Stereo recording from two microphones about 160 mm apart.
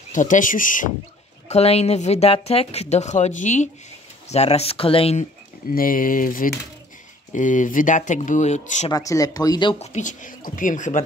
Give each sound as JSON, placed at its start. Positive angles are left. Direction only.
{"t": 0.1, "sound": "speech", "side_deg": 55}
{"t": 1.5, "sound": "speech", "side_deg": 40}
{"t": 5.7, "sound": "speech", "side_deg": 60}
{"t": 8.9, "sound": "speech", "side_deg": 20}
{"t": 9.8, "sound": "speech", "side_deg": 50}